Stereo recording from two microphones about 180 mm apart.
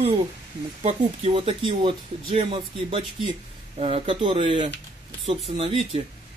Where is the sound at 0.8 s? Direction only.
30° right (ahead or behind).